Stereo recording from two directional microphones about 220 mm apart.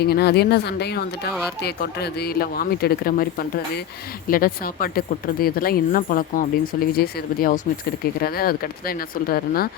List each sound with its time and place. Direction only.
0.0 s speech: 45° left (ahead or behind)